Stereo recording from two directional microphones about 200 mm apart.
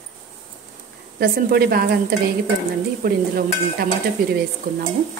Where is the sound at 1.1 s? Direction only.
50° right (ahead or behind).